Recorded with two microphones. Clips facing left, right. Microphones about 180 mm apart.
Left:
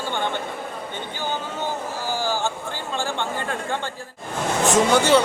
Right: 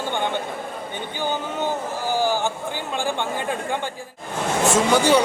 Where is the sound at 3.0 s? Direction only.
15° right (ahead or behind).